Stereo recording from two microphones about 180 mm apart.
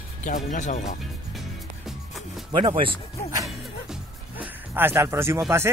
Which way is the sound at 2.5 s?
25° right (ahead or behind).